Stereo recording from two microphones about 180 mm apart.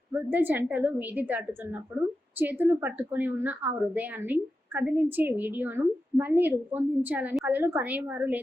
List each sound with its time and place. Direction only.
0.1 s a woman's voice: 10° right (ahead or behind)